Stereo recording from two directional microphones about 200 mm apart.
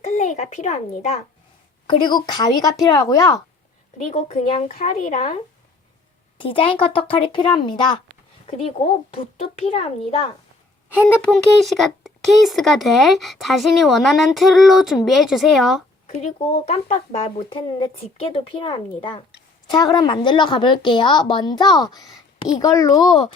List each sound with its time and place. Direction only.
0.0 s a child's voice: 35° left (ahead or behind)
1.9 s speech: 20° left (ahead or behind)
3.9 s speech: 35° left (ahead or behind)
6.4 s speech: 25° left (ahead or behind)
10.9 s speech: 5° left (ahead or behind)
16.0 s a child's voice: 30° left (ahead or behind)